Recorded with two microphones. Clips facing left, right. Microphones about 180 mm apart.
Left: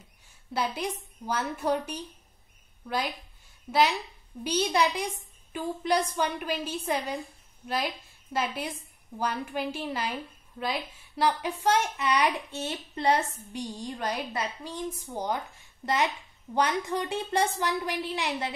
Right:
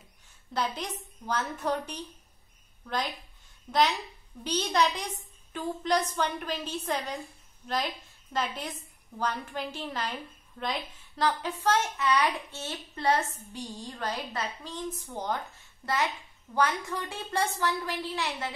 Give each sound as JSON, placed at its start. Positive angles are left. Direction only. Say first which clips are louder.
{"t": 0.5, "sound": "a woman's voice", "louder": "left 2 dB", "side_deg": 10}